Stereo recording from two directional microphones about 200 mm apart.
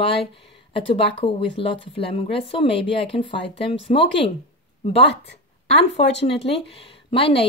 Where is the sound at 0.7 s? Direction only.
25° left (ahead or behind).